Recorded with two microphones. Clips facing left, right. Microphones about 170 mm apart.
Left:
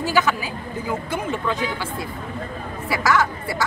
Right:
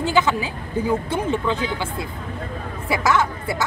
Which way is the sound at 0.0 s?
25° right (ahead or behind).